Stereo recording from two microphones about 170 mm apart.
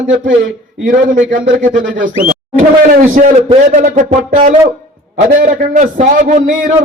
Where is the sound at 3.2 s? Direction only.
55° right (ahead or behind).